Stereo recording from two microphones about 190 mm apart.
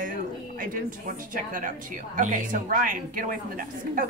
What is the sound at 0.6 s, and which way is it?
Speech, 45° right (ahead or behind).